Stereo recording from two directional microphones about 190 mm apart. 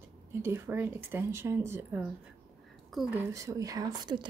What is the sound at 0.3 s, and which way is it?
Speech, 15° right (ahead or behind).